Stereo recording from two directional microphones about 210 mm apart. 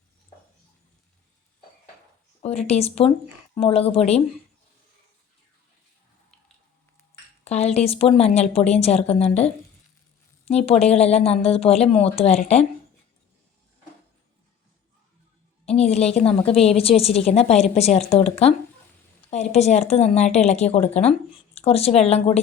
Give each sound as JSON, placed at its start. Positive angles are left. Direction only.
{"t": 2.4, "sound": "a woman's voice", "side_deg": 30}
{"t": 7.4, "sound": "a woman's voice", "side_deg": 30}
{"t": 10.7, "sound": "a woman's voice", "side_deg": 30}
{"t": 15.6, "sound": "a woman's voice", "side_deg": 30}